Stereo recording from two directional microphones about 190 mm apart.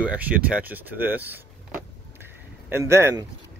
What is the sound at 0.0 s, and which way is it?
Speech, 5° right (ahead or behind).